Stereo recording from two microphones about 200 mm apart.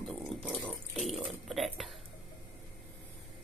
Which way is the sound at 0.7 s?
Centre (ahead or behind).